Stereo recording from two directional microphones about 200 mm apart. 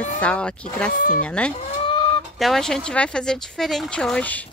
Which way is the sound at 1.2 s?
5° left (ahead or behind).